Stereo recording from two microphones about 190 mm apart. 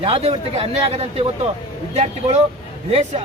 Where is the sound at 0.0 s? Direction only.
30° right (ahead or behind).